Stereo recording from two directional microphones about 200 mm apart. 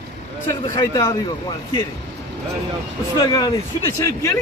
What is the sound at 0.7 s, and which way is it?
Speech, 15° left (ahead or behind).